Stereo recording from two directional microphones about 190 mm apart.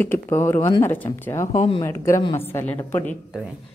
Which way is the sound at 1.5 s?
30° left (ahead or behind).